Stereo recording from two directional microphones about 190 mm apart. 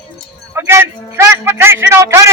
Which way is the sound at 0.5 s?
15° right (ahead or behind).